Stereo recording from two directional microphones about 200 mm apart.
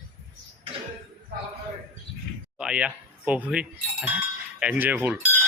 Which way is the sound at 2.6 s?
5° right (ahead or behind).